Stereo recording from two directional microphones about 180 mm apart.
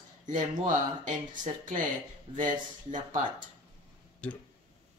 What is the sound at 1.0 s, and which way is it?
Speech, 45° right (ahead or behind).